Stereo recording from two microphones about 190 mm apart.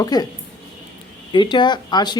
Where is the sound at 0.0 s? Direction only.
20° left (ahead or behind).